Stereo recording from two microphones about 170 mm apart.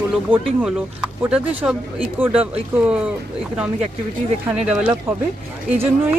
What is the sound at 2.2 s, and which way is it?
Speech, 10° right (ahead or behind).